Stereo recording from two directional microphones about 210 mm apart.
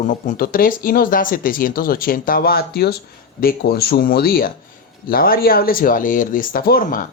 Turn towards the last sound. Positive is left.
turn(degrees=40)  # may be behind; listen again after turning